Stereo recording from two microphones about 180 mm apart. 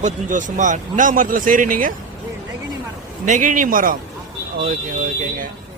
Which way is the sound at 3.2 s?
45° right (ahead or behind).